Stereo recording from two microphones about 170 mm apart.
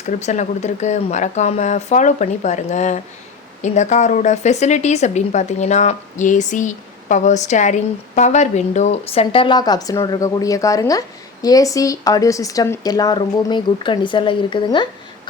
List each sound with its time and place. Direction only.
0.0 s a woman's voice: 45° left (ahead or behind)